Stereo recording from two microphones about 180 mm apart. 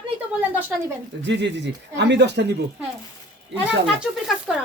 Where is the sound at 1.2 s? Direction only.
75° right (ahead or behind).